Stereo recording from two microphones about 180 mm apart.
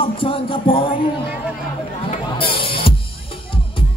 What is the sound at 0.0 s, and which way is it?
Music, 30° left (ahead or behind).